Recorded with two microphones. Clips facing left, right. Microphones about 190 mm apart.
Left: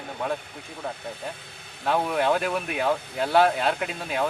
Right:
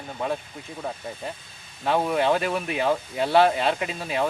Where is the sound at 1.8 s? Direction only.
5° right (ahead or behind).